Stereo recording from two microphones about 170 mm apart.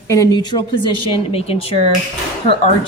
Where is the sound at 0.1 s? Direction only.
20° left (ahead or behind).